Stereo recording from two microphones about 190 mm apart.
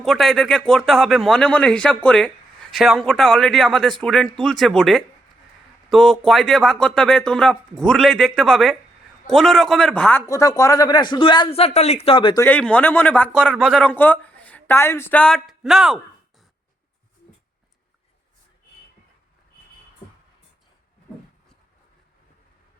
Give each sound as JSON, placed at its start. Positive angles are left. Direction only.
{"t": 0.0, "sound": "a man's voice", "side_deg": 0}
{"t": 12.4, "sound": "speech", "side_deg": 10}